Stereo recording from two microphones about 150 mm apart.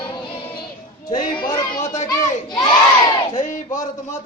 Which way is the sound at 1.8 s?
55° left (ahead or behind).